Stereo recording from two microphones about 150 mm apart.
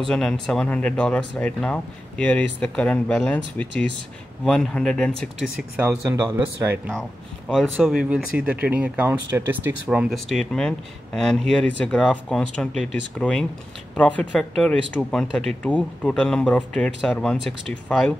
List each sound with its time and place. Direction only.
0.1 s speech: 5° left (ahead or behind)
5.4 s speech: 5° right (ahead or behind)
5.9 s speech: 15° right (ahead or behind)
6.9 s speech: 5° left (ahead or behind)